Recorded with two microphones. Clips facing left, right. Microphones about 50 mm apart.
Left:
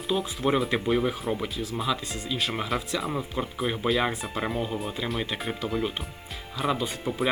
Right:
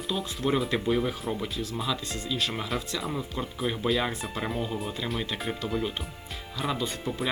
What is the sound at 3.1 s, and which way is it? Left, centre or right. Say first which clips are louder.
Speech: left 3 dB; centre.